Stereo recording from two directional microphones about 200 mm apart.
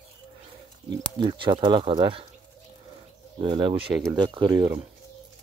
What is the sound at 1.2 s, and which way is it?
Speech, 25° right (ahead or behind).